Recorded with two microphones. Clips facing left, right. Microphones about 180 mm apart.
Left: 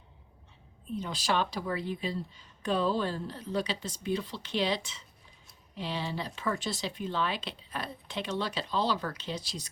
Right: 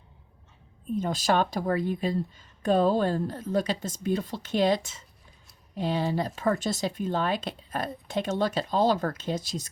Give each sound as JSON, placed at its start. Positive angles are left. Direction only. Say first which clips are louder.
{"t": 0.9, "sound": "speech", "louder": "right 6 dB", "side_deg": -45}